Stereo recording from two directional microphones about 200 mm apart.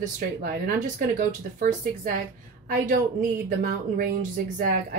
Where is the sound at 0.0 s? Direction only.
45° right (ahead or behind).